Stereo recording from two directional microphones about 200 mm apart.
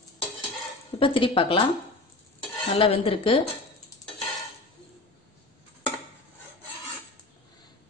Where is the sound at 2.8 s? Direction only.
30° left (ahead or behind).